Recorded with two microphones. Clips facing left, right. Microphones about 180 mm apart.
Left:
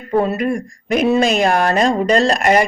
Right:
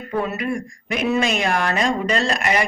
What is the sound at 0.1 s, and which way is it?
Speech, 40° left (ahead or behind).